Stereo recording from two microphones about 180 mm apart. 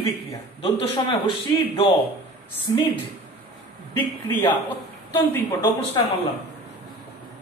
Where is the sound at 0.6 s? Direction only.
30° left (ahead or behind).